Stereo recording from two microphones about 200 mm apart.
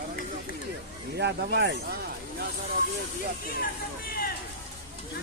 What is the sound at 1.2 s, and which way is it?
Speech, 55° right (ahead or behind).